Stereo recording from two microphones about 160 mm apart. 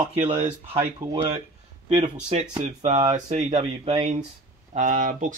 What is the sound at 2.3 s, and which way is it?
Speech, 45° right (ahead or behind).